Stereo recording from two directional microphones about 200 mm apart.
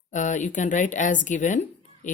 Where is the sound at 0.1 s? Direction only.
40° left (ahead or behind).